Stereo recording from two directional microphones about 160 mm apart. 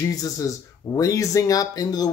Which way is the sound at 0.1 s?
20° left (ahead or behind).